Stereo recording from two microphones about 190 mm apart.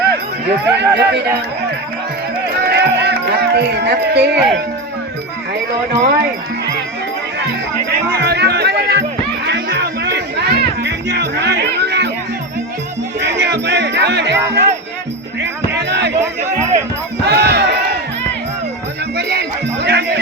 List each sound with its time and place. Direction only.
0.4 s speech: 65° right (ahead or behind)
2.6 s speech: 55° right (ahead or behind)
5.9 s speech: 60° right (ahead or behind)
8.1 s music: 60° right (ahead or behind)
13.1 s music: 60° right (ahead or behind)
15.8 s music: 60° right (ahead or behind)
17.2 s a sound: 60° right (ahead or behind)
19.1 s music: 60° right (ahead or behind)